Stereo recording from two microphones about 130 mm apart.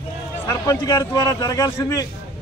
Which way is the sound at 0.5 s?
20° left (ahead or behind).